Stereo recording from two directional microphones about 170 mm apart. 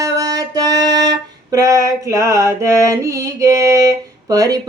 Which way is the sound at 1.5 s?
20° right (ahead or behind).